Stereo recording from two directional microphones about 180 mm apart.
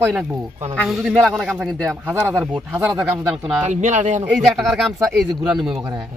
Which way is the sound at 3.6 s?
40° right (ahead or behind).